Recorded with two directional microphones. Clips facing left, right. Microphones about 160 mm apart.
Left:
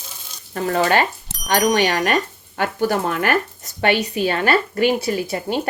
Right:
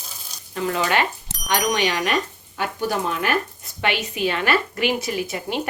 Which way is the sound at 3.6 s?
45° left (ahead or behind).